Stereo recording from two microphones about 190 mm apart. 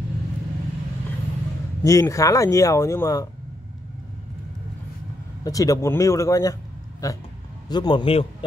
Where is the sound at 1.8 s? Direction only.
15° left (ahead or behind).